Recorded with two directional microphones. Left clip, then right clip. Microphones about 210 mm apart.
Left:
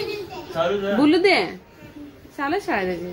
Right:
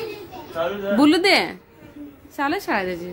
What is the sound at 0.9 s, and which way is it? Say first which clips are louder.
A child's voice: right 2 dB; 25° right (ahead or behind).